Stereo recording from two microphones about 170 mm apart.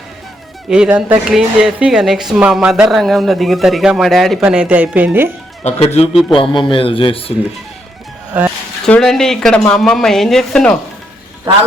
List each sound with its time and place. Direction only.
0.7 s a man's voice: 5° right (ahead or behind)
5.6 s a man's voice: 40° left (ahead or behind)
8.3 s speech: 10° right (ahead or behind)
8.8 s a man's voice: 5° left (ahead or behind)